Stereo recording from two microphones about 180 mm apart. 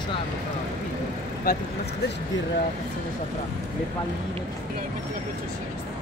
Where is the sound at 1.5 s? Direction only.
50° left (ahead or behind).